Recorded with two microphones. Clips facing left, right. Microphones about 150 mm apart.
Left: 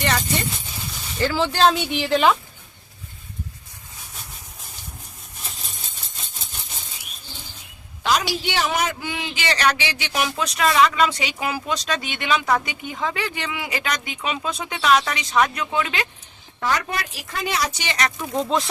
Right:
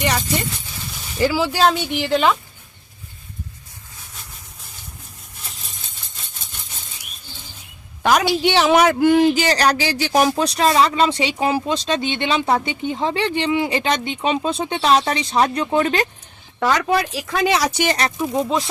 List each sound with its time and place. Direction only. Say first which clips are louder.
1.2 s speech: right 2 dB; 5° right (ahead or behind)
8.0 s a woman's voice: right 5 dB; 55° right (ahead or behind)
8.5 s speech: right 9 dB; 80° right; by 16.0 s 40° right (ahead or behind)
16.6 s speech: right 6 dB; 90° right; by 17.8 s 70° right (ahead or behind)
17.8 s speech: right 4 dB; 35° right (ahead or behind)
18.2 s speech: right 3 dB; 10° right (ahead or behind)